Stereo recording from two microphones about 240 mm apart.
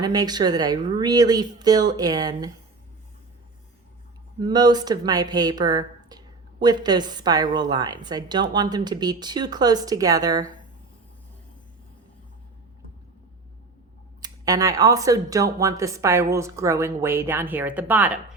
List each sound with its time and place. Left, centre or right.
0.0 s a woman's voice: centre
4.4 s a woman's voice: centre
14.2 s a woman's voice: centre